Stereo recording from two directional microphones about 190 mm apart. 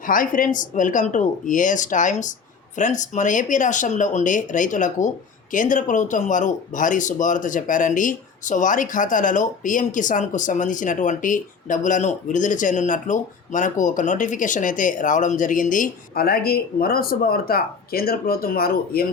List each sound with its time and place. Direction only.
0.0 s speech: 45° left (ahead or behind)